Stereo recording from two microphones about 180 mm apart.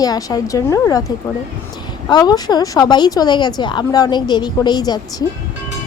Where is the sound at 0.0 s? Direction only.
20° left (ahead or behind).